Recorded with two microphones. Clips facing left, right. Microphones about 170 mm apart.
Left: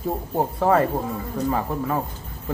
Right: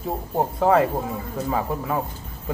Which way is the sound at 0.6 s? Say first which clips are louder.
Right 1 dB; 5° right (ahead or behind).